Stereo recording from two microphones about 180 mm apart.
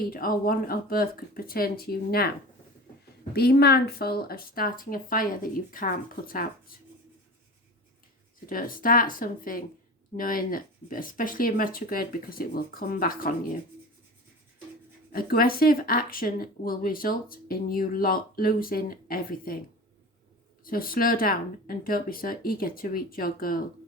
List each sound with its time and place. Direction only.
0.1 s speech: 55° left (ahead or behind)
3.3 s speech: 60° left (ahead or behind)
8.4 s speech: 50° left (ahead or behind)
15.1 s speech: 55° left (ahead or behind)
20.7 s speech: 55° left (ahead or behind)